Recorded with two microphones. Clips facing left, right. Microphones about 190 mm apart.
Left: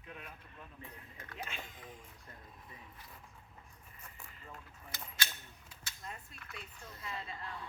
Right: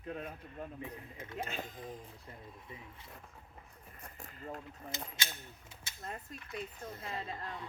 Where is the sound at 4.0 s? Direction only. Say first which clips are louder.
Right 7 dB; 40° right (ahead or behind).